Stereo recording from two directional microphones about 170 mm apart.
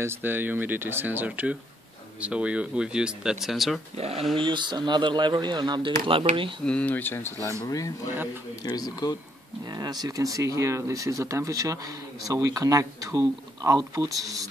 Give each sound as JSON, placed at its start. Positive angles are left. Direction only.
{"t": 0.0, "sound": "speech", "side_deg": -15}
{"t": 3.9, "sound": "speech", "side_deg": -35}
{"t": 6.6, "sound": "speech", "side_deg": 5}
{"t": 9.7, "sound": "speech", "side_deg": -25}